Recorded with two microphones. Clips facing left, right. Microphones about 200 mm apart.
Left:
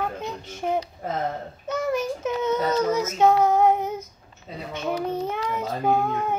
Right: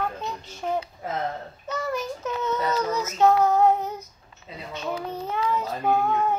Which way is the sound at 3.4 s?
55° left (ahead or behind).